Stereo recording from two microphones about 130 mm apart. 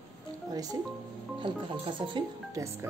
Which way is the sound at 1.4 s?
40° right (ahead or behind).